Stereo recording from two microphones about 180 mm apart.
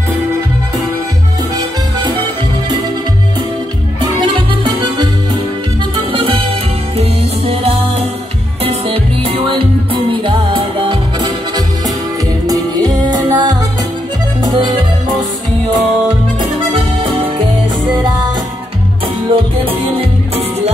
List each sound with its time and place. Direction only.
4.2 s music: 25° right (ahead or behind)
19.2 s music: 30° right (ahead or behind)